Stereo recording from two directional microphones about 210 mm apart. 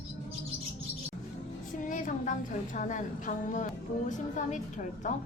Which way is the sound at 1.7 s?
40° left (ahead or behind).